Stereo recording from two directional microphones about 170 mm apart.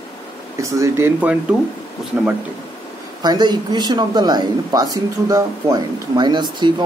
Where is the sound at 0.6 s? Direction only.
15° right (ahead or behind).